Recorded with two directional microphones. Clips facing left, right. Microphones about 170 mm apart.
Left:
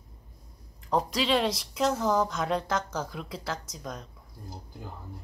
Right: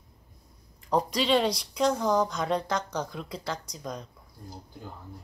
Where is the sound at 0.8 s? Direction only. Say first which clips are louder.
Right 1 dB; centre (ahead or behind).